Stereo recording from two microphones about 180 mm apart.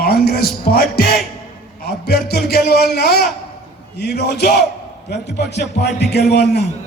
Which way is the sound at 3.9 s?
65° left (ahead or behind).